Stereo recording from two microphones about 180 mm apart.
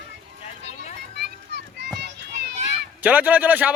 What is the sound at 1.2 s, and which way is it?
Children playing, 65° right (ahead or behind).